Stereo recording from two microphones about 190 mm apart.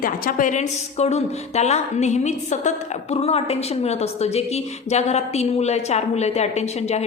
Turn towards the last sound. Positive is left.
turn(degrees=35)  # may be behind; listen again after turning